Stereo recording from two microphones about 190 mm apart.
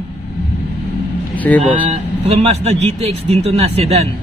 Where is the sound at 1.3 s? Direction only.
10° left (ahead or behind).